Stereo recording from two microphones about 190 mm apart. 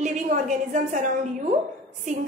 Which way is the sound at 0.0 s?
40° right (ahead or behind).